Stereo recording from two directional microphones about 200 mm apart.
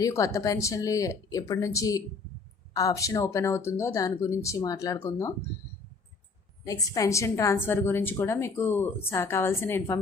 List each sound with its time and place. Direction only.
0.0 s speech: 15° left (ahead or behind)
6.7 s speech: 15° left (ahead or behind)